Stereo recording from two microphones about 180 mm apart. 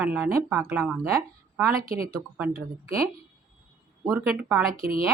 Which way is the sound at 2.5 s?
55° right (ahead or behind).